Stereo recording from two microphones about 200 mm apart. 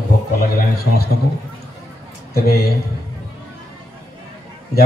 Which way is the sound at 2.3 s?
50° left (ahead or behind).